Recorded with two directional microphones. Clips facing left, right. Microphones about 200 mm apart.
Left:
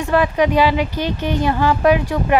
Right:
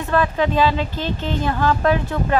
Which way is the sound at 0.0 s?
15° left (ahead or behind).